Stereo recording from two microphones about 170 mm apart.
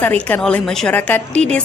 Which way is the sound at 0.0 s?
10° left (ahead or behind).